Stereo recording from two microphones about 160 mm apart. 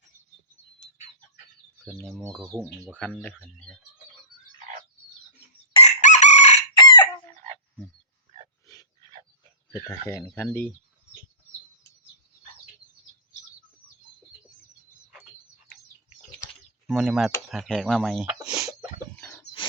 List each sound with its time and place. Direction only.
1.8 s speech: 5° left (ahead or behind)
2.5 s speech: 15° right (ahead or behind)
2.9 s speech: 5° left (ahead or behind)
5.7 s chicken: 45° left (ahead or behind)
6.7 s chicken: 30° left (ahead or behind)
8.6 s a sound: 20° left (ahead or behind)
10.1 s speech: 15° left (ahead or behind)
16.9 s speech: centre (ahead or behind)
18.4 s a sound: 5° right (ahead or behind)
19.1 s a sound: 10° left (ahead or behind)
19.6 s bird: 30° left (ahead or behind)